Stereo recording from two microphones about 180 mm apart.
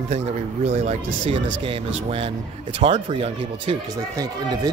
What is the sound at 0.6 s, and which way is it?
Speech, 40° right (ahead or behind).